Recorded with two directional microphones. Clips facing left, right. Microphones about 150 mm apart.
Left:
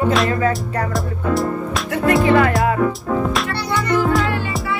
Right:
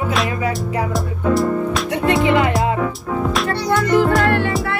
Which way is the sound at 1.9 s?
25° right (ahead or behind).